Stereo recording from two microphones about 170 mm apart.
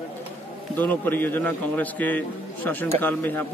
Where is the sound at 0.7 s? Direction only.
10° left (ahead or behind).